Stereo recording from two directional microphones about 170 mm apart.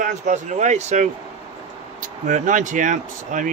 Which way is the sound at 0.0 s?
50° right (ahead or behind).